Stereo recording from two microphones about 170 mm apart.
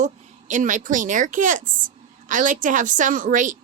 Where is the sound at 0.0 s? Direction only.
45° right (ahead or behind).